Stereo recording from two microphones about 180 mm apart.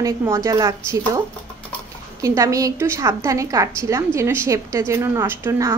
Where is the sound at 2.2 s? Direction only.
20° right (ahead or behind).